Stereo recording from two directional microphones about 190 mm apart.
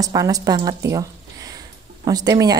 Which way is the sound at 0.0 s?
20° right (ahead or behind).